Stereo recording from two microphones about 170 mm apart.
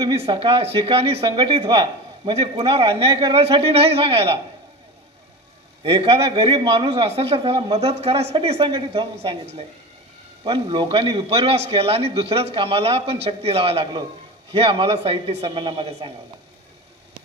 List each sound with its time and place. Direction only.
0.0 s speech: 30° right (ahead or behind)
5.9 s speech: 35° right (ahead or behind)